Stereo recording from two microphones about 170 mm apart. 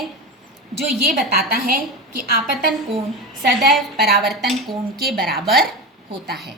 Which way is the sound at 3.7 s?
Centre (ahead or behind).